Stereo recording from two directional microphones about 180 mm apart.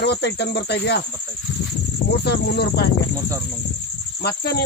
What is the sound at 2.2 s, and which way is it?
Speech, 60° left (ahead or behind).